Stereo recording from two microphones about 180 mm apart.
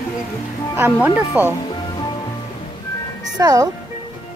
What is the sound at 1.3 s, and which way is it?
Speech, 5° right (ahead or behind).